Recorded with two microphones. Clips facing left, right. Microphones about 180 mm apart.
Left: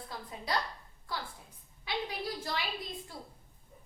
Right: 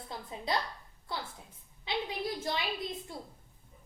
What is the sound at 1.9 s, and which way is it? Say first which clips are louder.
Speech: right 2 dB; 20° right (ahead or behind).